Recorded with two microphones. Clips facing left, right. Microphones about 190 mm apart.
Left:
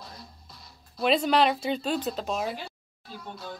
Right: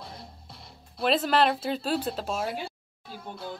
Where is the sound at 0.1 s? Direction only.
25° right (ahead or behind).